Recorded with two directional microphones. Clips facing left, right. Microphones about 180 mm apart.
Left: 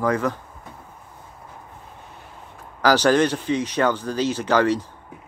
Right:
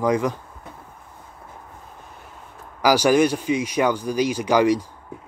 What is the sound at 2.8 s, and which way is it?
Speech, 10° right (ahead or behind).